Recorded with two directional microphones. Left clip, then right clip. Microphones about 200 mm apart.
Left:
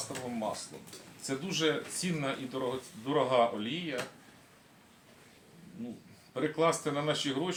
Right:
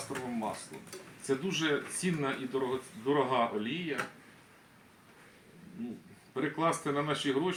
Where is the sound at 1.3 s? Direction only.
15° left (ahead or behind).